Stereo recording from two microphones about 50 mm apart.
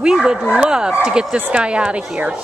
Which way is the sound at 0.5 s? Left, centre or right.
Centre.